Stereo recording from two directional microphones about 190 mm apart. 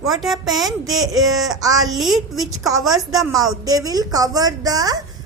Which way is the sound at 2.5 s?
20° right (ahead or behind).